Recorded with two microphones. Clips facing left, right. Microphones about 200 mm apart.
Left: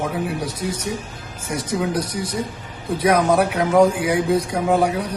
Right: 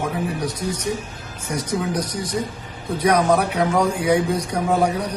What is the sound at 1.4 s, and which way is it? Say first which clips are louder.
A man's voice: left 1 dB; 10° left (ahead or behind).